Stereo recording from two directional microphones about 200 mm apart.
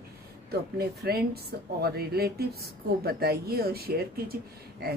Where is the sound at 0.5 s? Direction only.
50° right (ahead or behind).